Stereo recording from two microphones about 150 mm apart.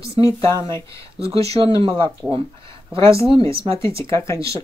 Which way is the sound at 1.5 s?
40° right (ahead or behind).